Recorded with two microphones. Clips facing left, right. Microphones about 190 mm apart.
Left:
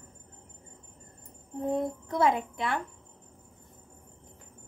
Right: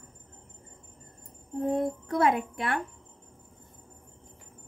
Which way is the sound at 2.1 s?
55° right (ahead or behind).